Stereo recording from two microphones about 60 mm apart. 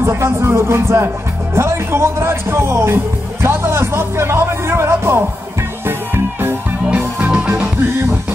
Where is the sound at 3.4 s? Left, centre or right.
Right.